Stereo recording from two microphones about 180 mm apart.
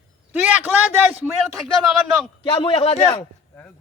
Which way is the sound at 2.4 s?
30° left (ahead or behind).